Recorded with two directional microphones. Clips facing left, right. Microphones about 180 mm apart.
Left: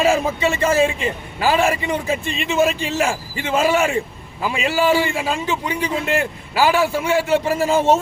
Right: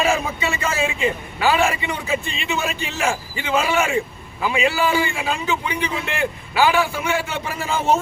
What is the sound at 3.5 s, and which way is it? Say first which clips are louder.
A man's voice: left 2 dB; 40° left (ahead or behind).